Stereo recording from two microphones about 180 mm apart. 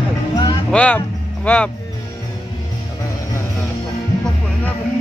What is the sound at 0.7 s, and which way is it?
Speech, 5° left (ahead or behind).